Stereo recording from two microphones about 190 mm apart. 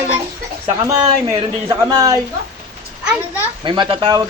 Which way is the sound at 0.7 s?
15° right (ahead or behind).